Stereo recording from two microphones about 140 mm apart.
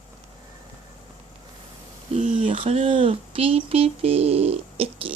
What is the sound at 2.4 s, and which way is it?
Speech, 40° right (ahead or behind).